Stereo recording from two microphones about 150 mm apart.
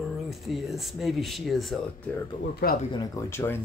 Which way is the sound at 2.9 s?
25° left (ahead or behind).